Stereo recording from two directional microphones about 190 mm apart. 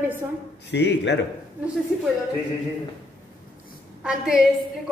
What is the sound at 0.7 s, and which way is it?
Speech, 65° left (ahead or behind).